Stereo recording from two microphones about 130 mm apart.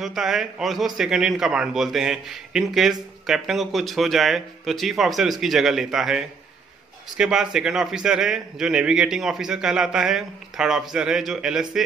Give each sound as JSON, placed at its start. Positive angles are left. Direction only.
{"t": 0.0, "sound": "a man's voice", "side_deg": -5}